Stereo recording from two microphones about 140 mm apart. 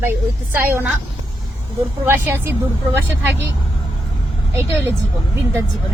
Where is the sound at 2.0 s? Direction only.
15° right (ahead or behind).